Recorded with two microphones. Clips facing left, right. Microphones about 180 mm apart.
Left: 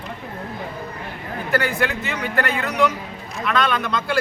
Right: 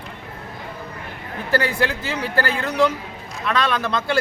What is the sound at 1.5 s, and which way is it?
Speech, 30° right (ahead or behind).